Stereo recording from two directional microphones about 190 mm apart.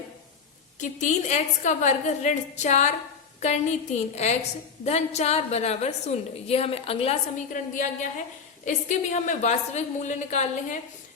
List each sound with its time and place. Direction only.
0.8 s a woman's voice: 40° left (ahead or behind)